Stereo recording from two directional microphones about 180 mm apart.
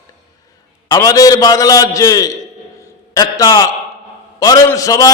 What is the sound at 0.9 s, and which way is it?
A man's voice, 20° left (ahead or behind).